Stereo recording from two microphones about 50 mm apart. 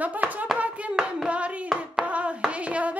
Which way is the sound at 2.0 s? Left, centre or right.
Right.